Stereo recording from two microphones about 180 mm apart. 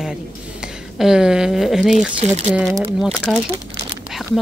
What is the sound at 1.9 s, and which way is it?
Speech, 40° right (ahead or behind).